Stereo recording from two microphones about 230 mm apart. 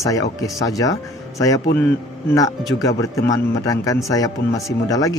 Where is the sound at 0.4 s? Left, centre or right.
Centre.